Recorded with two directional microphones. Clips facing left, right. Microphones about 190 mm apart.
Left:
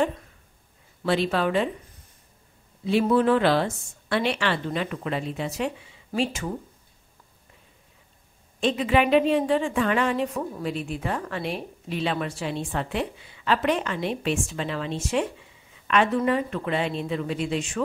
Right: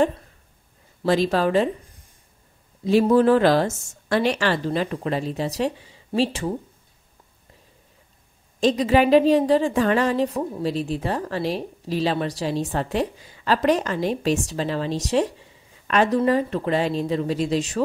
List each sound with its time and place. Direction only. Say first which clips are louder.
1.0 s speech: right 4 dB; 40° right (ahead or behind)
2.8 s speech: right 4 dB; 40° right (ahead or behind)
8.5 s speech: right 4 dB; 40° right (ahead or behind)